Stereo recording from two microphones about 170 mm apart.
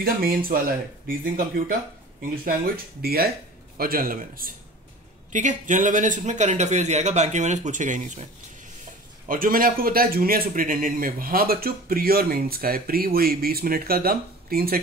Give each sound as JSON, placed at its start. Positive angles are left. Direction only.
{"t": 0.0, "sound": "a man's voice", "side_deg": -60}
{"t": 9.3, "sound": "a man's voice", "side_deg": -55}